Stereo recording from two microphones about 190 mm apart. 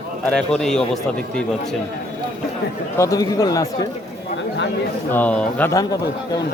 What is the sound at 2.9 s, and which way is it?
Speech, 15° left (ahead or behind).